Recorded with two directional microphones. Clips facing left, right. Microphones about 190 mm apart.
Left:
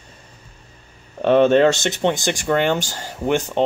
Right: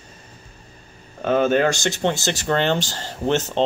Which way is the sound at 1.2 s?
30° left (ahead or behind).